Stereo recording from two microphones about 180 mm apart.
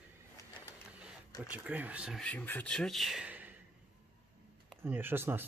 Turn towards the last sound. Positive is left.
turn(degrees=-10)  # may be behind; listen again after turning